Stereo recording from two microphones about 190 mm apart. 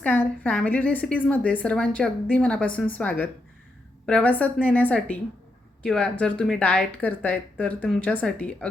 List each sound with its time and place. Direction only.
0.0 s a woman's voice: 10° left (ahead or behind)